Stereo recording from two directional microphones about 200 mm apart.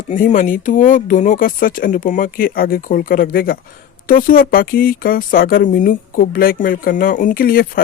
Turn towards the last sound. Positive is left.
turn(degrees=45)  # may be behind; listen again after turning